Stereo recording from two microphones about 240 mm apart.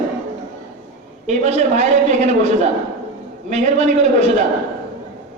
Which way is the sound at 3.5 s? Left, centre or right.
Right.